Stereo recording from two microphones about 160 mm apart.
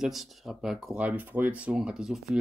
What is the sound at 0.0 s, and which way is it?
Speech, centre (ahead or behind).